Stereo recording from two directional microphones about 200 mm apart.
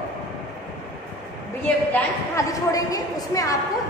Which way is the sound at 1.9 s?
15° left (ahead or behind).